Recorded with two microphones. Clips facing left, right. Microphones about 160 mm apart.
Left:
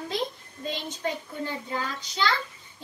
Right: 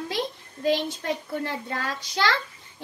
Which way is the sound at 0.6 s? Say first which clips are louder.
Right 7 dB; 80° right.